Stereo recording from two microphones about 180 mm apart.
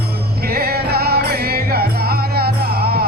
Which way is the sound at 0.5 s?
60° right (ahead or behind).